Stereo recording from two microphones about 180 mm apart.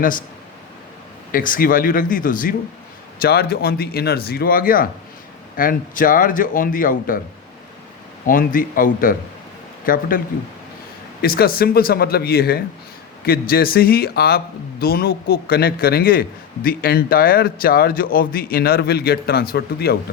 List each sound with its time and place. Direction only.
0.0 s a man's voice: 50° left (ahead or behind)
1.3 s a man's voice: 50° left (ahead or behind)
8.3 s a man's voice: 50° left (ahead or behind)
11.2 s speech: 55° left (ahead or behind)